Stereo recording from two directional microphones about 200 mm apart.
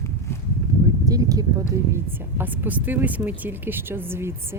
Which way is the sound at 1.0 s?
20° right (ahead or behind).